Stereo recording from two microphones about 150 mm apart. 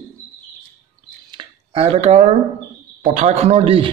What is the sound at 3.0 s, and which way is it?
Speech, 55° right (ahead or behind).